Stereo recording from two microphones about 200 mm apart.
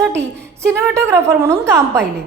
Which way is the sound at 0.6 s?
15° right (ahead or behind).